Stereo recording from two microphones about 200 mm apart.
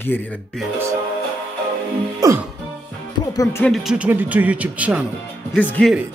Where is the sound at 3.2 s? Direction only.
15° left (ahead or behind).